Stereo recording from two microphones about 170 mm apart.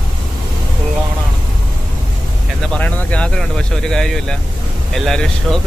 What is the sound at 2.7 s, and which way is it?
Speech, 10° left (ahead or behind).